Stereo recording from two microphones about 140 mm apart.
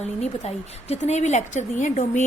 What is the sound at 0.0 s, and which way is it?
A woman's voice, 50° left (ahead or behind).